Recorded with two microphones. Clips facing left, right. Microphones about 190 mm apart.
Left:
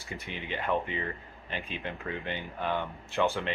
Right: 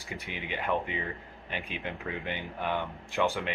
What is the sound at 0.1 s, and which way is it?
Speech, 15° right (ahead or behind).